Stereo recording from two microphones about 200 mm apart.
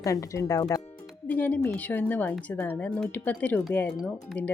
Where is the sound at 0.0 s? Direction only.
15° left (ahead or behind).